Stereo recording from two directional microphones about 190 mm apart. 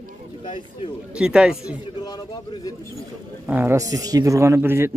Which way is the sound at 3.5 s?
10° right (ahead or behind).